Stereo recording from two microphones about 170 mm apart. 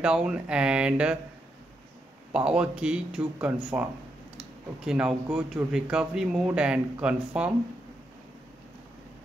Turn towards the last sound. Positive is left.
turn(degrees=-5)  # may be behind; listen again after turning